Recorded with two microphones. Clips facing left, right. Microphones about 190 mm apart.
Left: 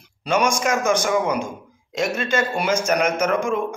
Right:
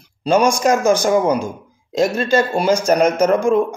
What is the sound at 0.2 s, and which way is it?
A man's voice, 35° right (ahead or behind).